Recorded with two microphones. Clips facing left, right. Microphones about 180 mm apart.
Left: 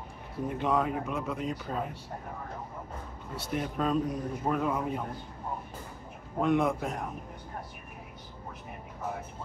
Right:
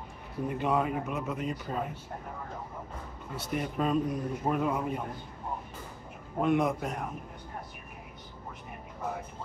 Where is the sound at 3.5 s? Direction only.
5° right (ahead or behind).